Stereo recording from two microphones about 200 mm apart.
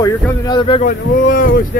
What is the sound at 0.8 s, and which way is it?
Speech, 45° left (ahead or behind).